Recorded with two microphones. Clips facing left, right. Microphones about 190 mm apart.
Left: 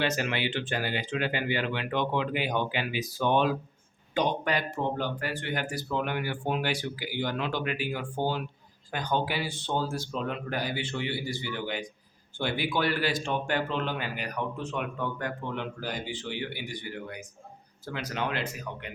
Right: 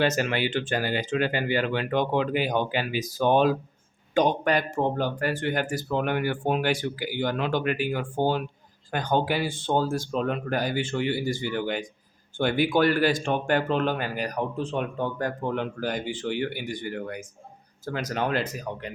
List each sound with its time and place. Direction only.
0.0 s speech: 45° right (ahead or behind)